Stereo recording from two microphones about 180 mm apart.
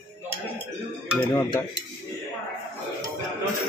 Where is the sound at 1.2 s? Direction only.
15° left (ahead or behind).